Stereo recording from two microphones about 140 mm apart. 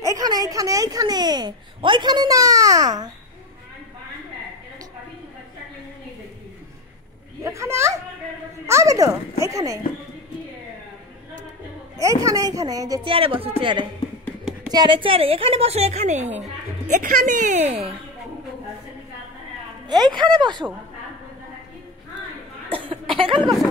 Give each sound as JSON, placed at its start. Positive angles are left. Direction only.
{"t": 0.0, "sound": "a woman's voice", "side_deg": -25}
{"t": 7.4, "sound": "a woman's voice", "side_deg": -20}
{"t": 12.0, "sound": "a woman's voice", "side_deg": -25}
{"t": 13.0, "sound": "a woman's voice", "side_deg": -40}
{"t": 17.1, "sound": "speech", "side_deg": -80}
{"t": 19.9, "sound": "speech", "side_deg": -30}
{"t": 23.1, "sound": "speech", "side_deg": -40}